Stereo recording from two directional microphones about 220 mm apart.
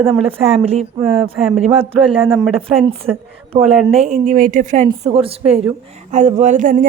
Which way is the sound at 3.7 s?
Centre (ahead or behind).